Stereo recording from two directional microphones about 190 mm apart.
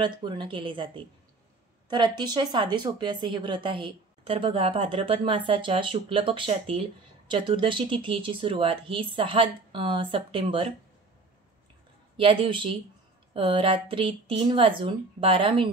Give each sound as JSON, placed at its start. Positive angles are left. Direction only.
{"t": 0.0, "sound": "a woman's voice", "side_deg": -25}
{"t": 12.2, "sound": "a woman's voice", "side_deg": -30}